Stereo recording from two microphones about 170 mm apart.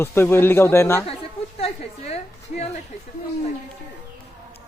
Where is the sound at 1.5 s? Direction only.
35° left (ahead or behind).